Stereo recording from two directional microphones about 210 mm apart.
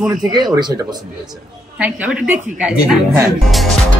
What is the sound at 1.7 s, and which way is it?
Speech, 5° right (ahead or behind).